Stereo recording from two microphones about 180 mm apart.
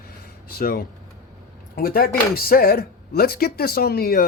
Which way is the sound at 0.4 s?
55° left (ahead or behind).